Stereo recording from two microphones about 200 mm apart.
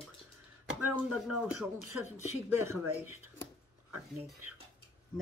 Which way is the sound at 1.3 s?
5° right (ahead or behind).